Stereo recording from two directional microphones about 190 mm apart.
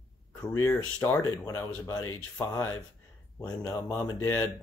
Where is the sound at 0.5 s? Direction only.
15° left (ahead or behind).